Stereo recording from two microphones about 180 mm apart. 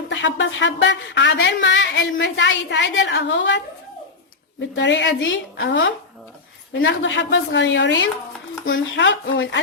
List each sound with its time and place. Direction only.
0.1 s speech: 85° left
4.7 s a woman's voice: 85° left